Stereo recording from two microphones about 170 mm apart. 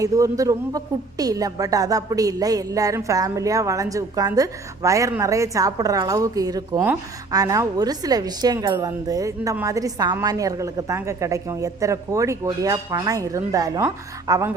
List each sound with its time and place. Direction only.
0.0 s speech: 20° right (ahead or behind)